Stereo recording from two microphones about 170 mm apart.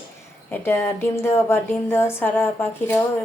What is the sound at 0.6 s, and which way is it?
A woman's voice, 15° left (ahead or behind).